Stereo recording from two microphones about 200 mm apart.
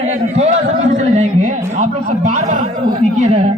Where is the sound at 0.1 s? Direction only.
35° right (ahead or behind).